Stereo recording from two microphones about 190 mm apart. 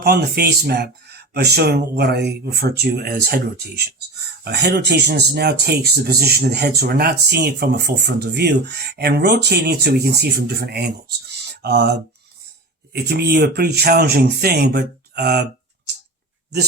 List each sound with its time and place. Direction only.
0.0 s speech: 55° right (ahead or behind)